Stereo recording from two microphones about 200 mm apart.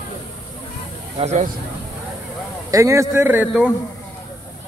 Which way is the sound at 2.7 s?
15° right (ahead or behind).